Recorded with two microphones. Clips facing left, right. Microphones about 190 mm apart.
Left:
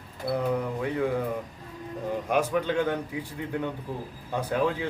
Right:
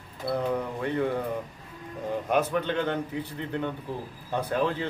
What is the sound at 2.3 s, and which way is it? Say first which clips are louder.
Speech: even; 10° left (ahead or behind).